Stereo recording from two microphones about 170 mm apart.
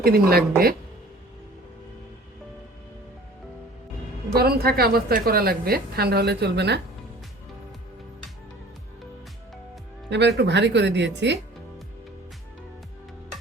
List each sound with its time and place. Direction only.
0.0 s a woman's voice: 65° right (ahead or behind)
4.4 s a woman's voice: 65° right (ahead or behind)
10.1 s speech: 90° right